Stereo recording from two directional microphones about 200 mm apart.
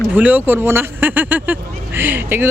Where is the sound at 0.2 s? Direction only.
10° right (ahead or behind).